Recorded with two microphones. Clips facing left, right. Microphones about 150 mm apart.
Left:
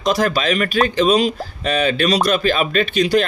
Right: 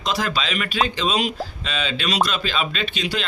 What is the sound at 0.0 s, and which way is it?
Speech, 45° left (ahead or behind).